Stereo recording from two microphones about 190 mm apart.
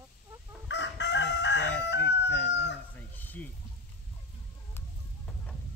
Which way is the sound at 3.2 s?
10° left (ahead or behind).